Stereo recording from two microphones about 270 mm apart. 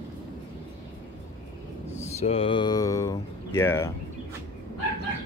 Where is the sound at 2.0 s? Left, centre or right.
Left.